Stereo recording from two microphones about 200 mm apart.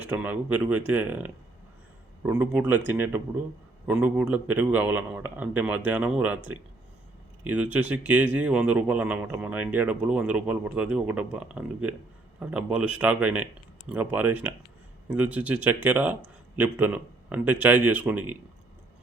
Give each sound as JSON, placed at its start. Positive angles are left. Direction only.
{"t": 0.0, "sound": "speech", "side_deg": -10}